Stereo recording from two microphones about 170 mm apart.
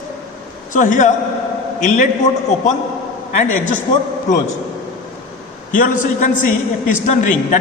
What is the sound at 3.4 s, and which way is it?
Speech, 50° left (ahead or behind).